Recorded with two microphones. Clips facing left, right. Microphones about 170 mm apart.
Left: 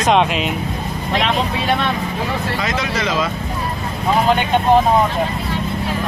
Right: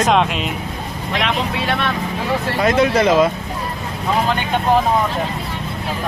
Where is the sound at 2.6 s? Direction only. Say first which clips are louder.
Right 7 dB; 55° right (ahead or behind).